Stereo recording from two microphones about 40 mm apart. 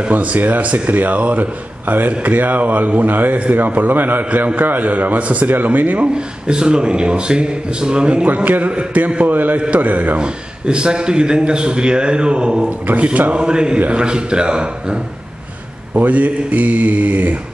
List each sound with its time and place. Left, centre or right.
0.1 s mantra: right
0.4 s a man's voice: right
6.0 s a man's voice: right
8.5 s a man's voice: right
8.7 s mantra: right
9.3 s a man's voice: right
9.8 s mantra: right
10.2 s a man's voice: right
12.8 s mantra: right
13.4 s a man's voice: right
15.9 s mantra: right